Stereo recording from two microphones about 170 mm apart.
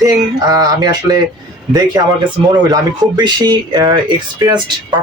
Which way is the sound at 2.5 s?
25° right (ahead or behind).